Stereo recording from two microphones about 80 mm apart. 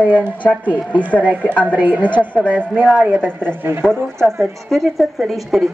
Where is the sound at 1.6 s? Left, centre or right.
Right.